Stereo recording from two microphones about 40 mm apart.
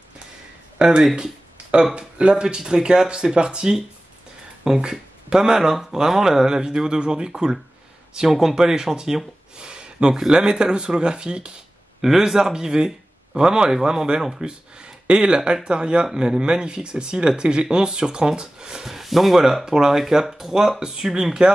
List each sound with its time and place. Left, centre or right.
0.7 s speech: right
1.1 s a sound: right
2.0 s speech: right
12.0 s speech: centre